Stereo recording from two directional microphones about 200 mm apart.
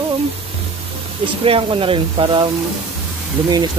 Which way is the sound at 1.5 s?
25° right (ahead or behind).